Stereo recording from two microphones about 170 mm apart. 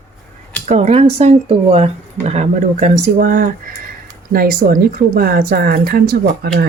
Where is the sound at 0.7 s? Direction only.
40° right (ahead or behind).